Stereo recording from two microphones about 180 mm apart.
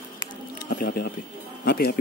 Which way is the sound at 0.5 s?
55° left (ahead or behind).